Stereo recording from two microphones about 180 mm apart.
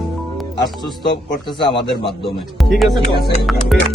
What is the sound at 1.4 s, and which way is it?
Speech, 25° left (ahead or behind).